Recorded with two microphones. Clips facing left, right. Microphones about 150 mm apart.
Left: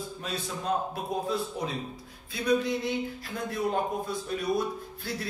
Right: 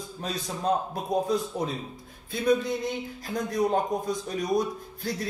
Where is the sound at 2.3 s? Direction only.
45° right (ahead or behind).